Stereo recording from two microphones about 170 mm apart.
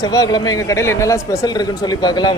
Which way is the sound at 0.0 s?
20° left (ahead or behind).